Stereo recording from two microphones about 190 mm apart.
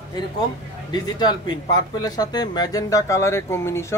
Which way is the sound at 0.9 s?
20° left (ahead or behind).